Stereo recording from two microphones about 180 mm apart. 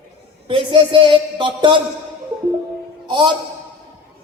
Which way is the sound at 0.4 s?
30° right (ahead or behind).